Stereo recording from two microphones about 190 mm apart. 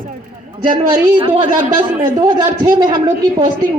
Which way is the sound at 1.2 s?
25° right (ahead or behind).